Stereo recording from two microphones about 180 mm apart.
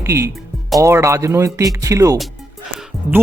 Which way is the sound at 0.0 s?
15° right (ahead or behind).